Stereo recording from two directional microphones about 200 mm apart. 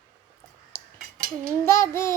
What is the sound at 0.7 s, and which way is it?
Cutlery, 15° left (ahead or behind).